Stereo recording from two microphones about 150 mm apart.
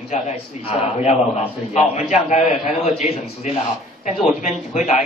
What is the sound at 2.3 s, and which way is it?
A man's voice, 50° left (ahead or behind).